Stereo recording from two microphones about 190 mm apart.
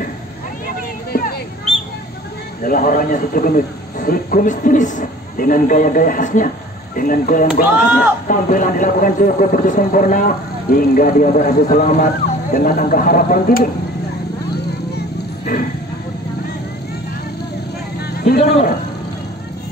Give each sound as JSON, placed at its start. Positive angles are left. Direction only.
{"t": 2.6, "sound": "speech", "side_deg": 45}
{"t": 7.7, "sound": "speech", "side_deg": -10}
{"t": 8.3, "sound": "speech", "side_deg": 45}
{"t": 18.4, "sound": "a sound", "side_deg": 35}